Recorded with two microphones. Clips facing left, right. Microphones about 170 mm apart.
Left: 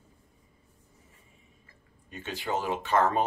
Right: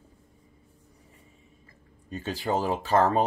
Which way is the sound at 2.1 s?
35° right (ahead or behind).